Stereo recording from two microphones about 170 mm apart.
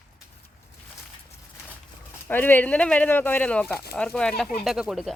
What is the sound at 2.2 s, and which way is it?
Speech, 10° left (ahead or behind).